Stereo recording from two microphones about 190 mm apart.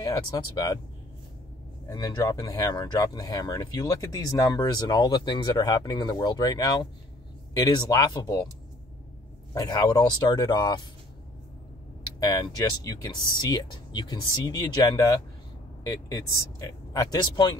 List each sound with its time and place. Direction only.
1.9 s speech: 20° left (ahead or behind)
9.5 s speech: 20° left (ahead or behind)
12.2 s speech: 20° left (ahead or behind)